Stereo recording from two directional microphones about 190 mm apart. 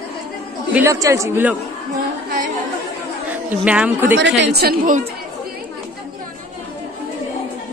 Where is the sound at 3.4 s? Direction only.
5° right (ahead or behind).